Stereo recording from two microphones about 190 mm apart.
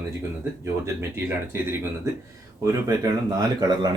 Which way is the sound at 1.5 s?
15° right (ahead or behind).